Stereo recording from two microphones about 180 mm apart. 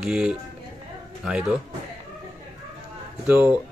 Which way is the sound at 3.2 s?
5° right (ahead or behind).